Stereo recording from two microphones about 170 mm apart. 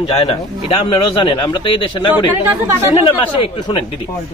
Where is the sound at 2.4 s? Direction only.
15° right (ahead or behind).